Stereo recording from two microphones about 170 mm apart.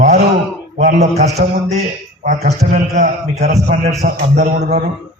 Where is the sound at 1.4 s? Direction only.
55° right (ahead or behind).